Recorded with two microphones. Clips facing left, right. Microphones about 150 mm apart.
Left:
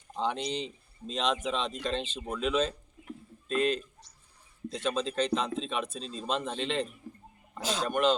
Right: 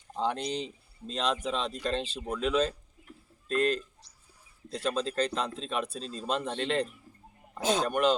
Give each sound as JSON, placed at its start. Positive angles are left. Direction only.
{"t": 0.2, "sound": "speech", "side_deg": 0}
{"t": 2.2, "sound": "speech", "side_deg": 0}
{"t": 4.7, "sound": "speech", "side_deg": -5}
{"t": 7.1, "sound": "wild animals", "side_deg": 65}
{"t": 7.6, "sound": "speech", "side_deg": -50}
{"t": 7.9, "sound": "speech", "side_deg": -5}